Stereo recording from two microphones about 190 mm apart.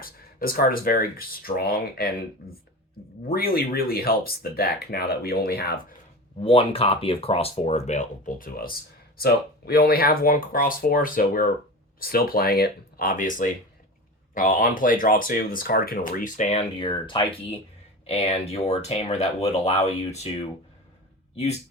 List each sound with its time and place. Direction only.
0.0 s speech: 50° left (ahead or behind)
3.2 s speech: 50° left (ahead or behind)
6.4 s speech: 30° left (ahead or behind)